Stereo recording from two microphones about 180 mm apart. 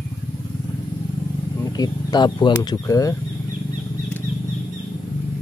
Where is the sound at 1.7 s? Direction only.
20° left (ahead or behind).